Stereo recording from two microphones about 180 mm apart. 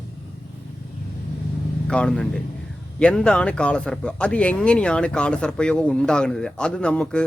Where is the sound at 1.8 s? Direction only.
5° left (ahead or behind).